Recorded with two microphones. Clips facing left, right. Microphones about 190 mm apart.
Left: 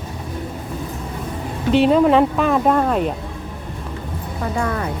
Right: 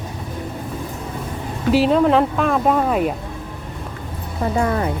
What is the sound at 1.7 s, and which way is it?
Speech, centre (ahead or behind).